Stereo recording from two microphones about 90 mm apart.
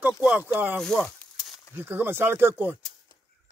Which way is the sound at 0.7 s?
5° left (ahead or behind).